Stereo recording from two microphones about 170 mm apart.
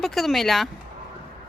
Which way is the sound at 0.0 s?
Centre (ahead or behind).